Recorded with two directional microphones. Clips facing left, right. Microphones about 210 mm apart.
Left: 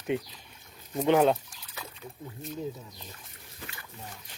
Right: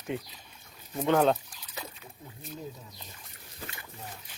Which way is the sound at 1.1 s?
10° left (ahead or behind).